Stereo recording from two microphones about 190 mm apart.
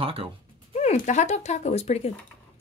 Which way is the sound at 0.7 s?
40° left (ahead or behind).